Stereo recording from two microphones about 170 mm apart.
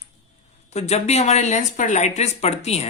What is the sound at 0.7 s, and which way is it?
Speech, 40° left (ahead or behind).